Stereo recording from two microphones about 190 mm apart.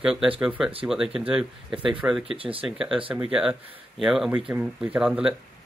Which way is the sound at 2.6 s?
5° right (ahead or behind).